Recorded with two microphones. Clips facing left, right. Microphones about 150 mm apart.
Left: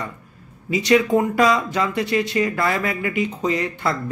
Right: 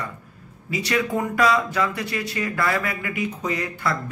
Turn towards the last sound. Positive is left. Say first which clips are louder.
# left 3 dB
turn(degrees=25)  # may be behind; listen again after turning